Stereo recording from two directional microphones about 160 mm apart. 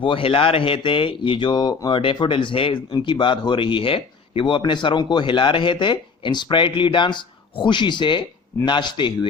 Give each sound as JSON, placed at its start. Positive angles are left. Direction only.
{"t": 0.0, "sound": "speech", "side_deg": 35}